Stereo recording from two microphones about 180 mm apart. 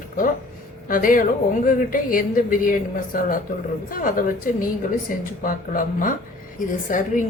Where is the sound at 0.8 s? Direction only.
50° left (ahead or behind).